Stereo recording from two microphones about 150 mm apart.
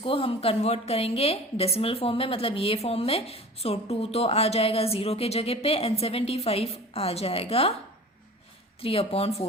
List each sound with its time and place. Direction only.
0.0 s a woman's voice: 40° left (ahead or behind)
8.8 s a woman's voice: 40° left (ahead or behind)